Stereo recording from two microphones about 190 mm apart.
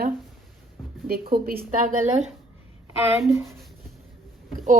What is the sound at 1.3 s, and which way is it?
Speech, 55° right (ahead or behind).